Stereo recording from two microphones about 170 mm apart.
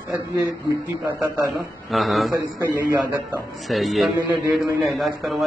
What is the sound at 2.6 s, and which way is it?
Speech, 15° right (ahead or behind).